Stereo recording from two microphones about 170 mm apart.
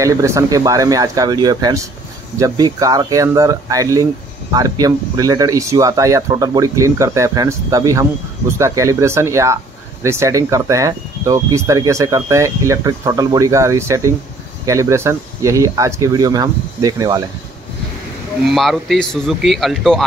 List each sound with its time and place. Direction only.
0.0 s speech: 15° right (ahead or behind)
18.4 s speech: centre (ahead or behind)